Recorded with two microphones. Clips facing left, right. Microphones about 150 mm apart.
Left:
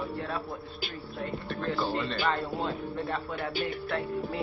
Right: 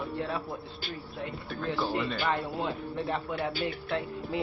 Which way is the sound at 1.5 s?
10° right (ahead or behind).